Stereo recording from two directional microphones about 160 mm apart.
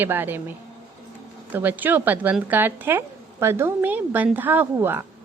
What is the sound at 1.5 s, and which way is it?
A woman's voice, 10° right (ahead or behind).